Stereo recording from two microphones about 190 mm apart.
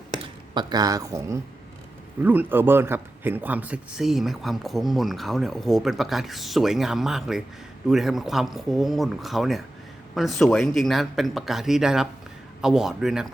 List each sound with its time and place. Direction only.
0.2 s a man's voice: 20° right (ahead or behind); by 13.2 s centre (ahead or behind)